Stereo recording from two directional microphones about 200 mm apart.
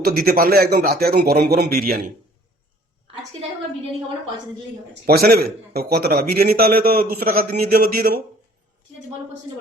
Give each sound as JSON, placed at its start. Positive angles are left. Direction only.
{"t": 0.0, "sound": "a man's voice", "side_deg": -50}
{"t": 5.0, "sound": "a man's voice", "side_deg": -50}